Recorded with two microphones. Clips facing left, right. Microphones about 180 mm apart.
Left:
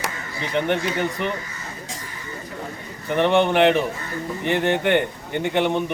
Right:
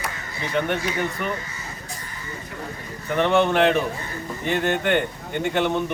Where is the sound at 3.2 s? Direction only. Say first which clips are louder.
Left 1 dB; 15° left (ahead or behind).